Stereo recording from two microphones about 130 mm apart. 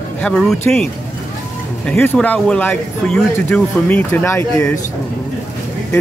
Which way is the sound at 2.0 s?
10° left (ahead or behind).